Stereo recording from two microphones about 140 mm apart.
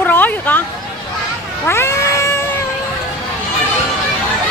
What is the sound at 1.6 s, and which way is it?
Cat, 20° left (ahead or behind).